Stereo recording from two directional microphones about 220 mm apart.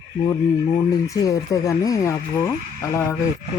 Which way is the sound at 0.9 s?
15° left (ahead or behind).